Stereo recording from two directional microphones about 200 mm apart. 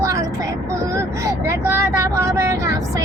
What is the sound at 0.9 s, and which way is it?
Speech, 15° right (ahead or behind).